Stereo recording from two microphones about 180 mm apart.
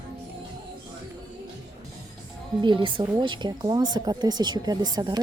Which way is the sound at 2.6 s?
25° right (ahead or behind).